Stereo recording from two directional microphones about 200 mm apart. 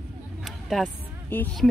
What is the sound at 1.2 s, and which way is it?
Speech, 10° left (ahead or behind).